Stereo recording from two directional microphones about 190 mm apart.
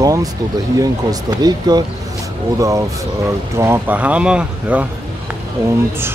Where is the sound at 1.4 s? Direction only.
20° right (ahead or behind).